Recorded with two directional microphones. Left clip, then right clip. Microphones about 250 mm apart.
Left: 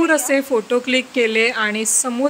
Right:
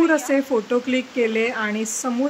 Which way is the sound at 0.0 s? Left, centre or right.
Left.